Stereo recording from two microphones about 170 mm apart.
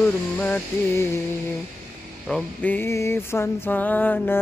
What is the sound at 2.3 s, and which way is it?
Mantra, 10° left (ahead or behind).